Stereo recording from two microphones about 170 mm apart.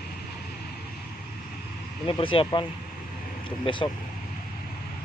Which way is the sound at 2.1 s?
30° left (ahead or behind).